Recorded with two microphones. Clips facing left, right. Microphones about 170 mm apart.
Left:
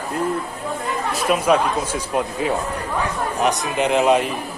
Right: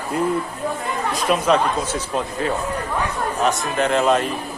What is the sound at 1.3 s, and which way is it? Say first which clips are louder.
A man's voice: left 1 dB; 10° left (ahead or behind).